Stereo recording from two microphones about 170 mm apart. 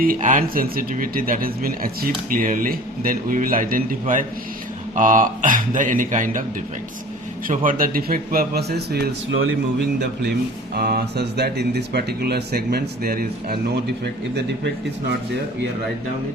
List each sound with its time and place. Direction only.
0.0 s speech: 55° right (ahead or behind)
7.4 s speech: 50° right (ahead or behind); by 9.0 s 70° right (ahead or behind)
10.8 s speech: 65° right (ahead or behind)